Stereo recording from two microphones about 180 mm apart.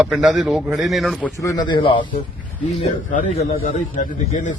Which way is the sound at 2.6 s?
40° left (ahead or behind).